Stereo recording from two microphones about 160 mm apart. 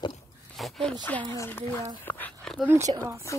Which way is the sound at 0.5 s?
Centre (ahead or behind).